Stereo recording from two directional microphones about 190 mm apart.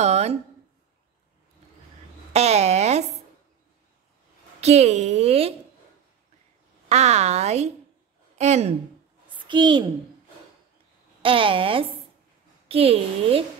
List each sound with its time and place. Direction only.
0.0 s a sound: 35° right (ahead or behind)
2.3 s a sound: 35° right (ahead or behind)
4.6 s a woman's voice: 35° right (ahead or behind)
6.9 s a woman's voice: 35° right (ahead or behind)
9.3 s a woman's voice: 25° right (ahead or behind)
11.2 s a woman's voice: 25° right (ahead or behind)